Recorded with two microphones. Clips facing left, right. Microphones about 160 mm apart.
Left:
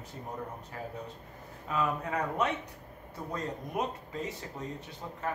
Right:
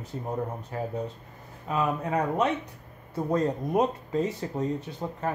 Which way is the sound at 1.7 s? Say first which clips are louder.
Right 4 dB; 25° right (ahead or behind).